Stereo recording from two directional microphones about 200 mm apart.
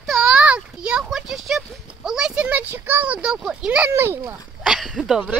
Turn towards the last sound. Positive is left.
turn(degrees=-5)  # may be behind; listen again after turning